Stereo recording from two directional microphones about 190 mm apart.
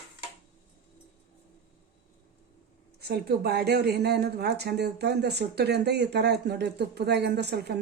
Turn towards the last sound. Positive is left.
turn(degrees=-60)  # may be behind; listen again after turning